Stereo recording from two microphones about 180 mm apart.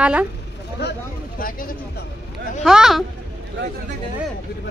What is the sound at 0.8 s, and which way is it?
Speech, 70° left (ahead or behind).